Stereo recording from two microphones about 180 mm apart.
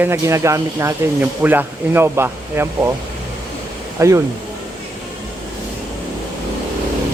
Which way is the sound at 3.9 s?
15° right (ahead or behind).